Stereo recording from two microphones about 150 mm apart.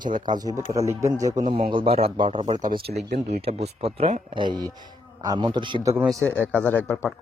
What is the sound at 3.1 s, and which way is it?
Speech, 90° right.